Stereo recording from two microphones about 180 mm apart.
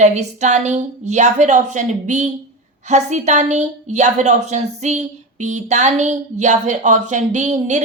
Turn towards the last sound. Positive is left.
turn(degrees=-40)  # may be behind; listen again after turning